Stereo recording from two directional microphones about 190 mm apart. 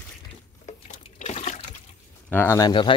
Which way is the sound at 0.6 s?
35° left (ahead or behind).